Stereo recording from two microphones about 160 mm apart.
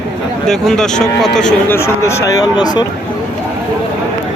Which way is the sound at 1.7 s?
15° left (ahead or behind).